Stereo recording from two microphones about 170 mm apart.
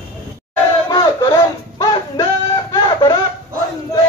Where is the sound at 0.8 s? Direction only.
25° left (ahead or behind).